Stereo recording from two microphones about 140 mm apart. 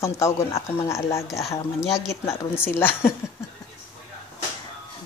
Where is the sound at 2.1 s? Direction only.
20° left (ahead or behind).